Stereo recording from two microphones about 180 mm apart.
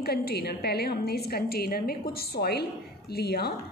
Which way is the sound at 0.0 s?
60° left (ahead or behind).